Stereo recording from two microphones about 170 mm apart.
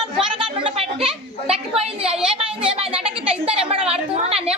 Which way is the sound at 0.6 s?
35° right (ahead or behind).